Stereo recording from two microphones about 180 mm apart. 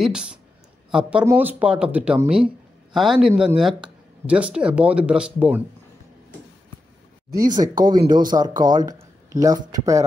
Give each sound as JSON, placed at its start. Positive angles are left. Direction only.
{"t": 0.0, "sound": "speech", "side_deg": -5}
{"t": 7.3, "sound": "speech", "side_deg": -20}